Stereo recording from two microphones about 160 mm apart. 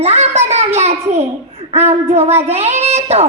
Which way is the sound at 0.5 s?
40° right (ahead or behind).